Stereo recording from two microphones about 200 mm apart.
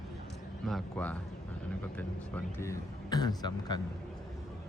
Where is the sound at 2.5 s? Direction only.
15° left (ahead or behind).